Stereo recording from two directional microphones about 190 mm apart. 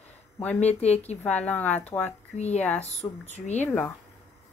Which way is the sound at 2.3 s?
35° left (ahead or behind).